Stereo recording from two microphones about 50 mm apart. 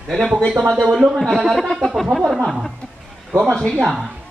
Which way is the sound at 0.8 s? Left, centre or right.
Centre.